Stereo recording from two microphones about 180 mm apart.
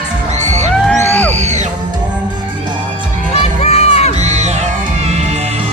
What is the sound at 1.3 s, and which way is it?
Music, 40° right (ahead or behind).